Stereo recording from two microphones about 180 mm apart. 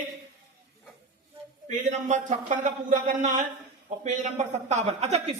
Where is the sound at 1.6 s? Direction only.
40° right (ahead or behind).